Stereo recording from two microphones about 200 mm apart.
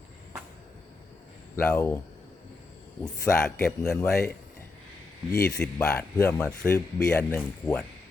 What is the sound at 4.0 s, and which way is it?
Speech, 15° left (ahead or behind).